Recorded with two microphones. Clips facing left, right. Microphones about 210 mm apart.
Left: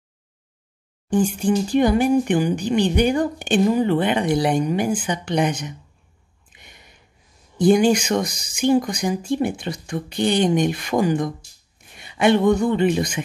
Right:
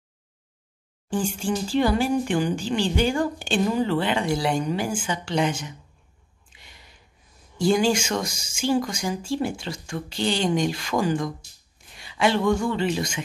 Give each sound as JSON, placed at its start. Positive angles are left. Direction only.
{"t": 1.1, "sound": "speech", "side_deg": 15}
{"t": 6.5, "sound": "a sound", "side_deg": 20}
{"t": 7.5, "sound": "speech", "side_deg": 20}